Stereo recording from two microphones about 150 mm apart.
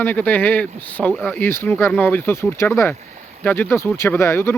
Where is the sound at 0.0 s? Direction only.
10° left (ahead or behind).